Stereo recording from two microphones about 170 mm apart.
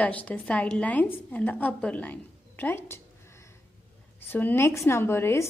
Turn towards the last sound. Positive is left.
turn(degrees=15)  # may be behind; listen again after turning